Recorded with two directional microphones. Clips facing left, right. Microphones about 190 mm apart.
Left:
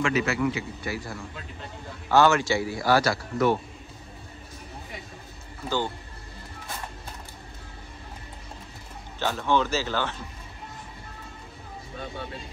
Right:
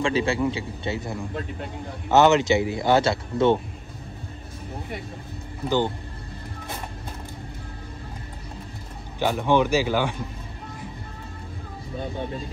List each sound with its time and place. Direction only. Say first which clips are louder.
0.0 s speech: right 2 dB; 30° right (ahead or behind)
5.7 s speech: right 5 dB; 15° right (ahead or behind)
9.2 s speech: right 4 dB; 15° right (ahead or behind)